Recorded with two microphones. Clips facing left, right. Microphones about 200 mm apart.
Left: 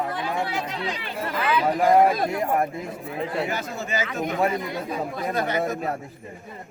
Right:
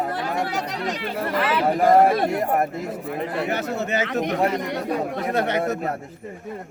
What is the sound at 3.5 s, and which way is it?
Speech, 65° right (ahead or behind).